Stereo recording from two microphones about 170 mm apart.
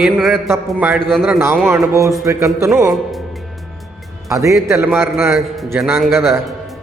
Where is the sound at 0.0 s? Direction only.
Centre (ahead or behind).